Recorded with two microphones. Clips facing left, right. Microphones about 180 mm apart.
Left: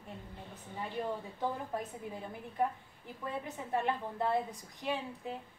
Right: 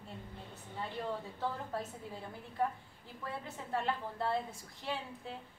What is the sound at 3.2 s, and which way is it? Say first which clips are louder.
A woman's voice: left 3 dB; 20° left (ahead or behind).